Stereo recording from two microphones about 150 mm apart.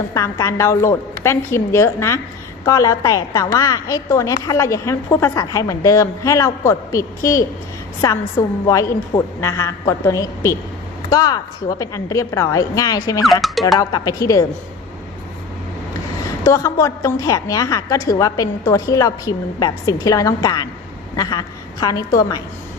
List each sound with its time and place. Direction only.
0.1 s a woman's voice: 20° left (ahead or behind)
13.4 s speech: centre (ahead or behind)
13.7 s a woman's voice: 25° left (ahead or behind)
16.4 s a woman's voice: 20° left (ahead or behind)